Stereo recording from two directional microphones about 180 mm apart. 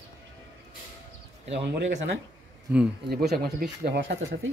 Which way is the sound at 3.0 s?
60° right (ahead or behind).